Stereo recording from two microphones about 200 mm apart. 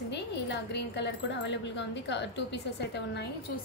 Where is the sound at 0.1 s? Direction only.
60° left (ahead or behind).